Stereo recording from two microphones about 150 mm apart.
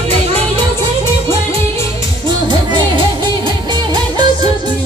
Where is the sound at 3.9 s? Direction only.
30° right (ahead or behind).